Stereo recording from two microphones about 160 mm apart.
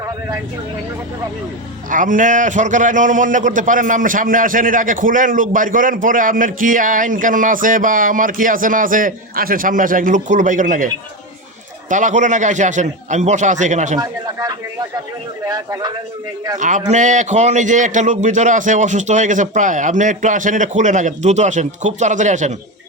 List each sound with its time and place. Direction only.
1.9 s a man's voice: 55° right (ahead or behind)
11.9 s a man's voice: 50° right (ahead or behind)
14.0 s speech: 20° right (ahead or behind)
16.6 s a man's voice: 50° right (ahead or behind)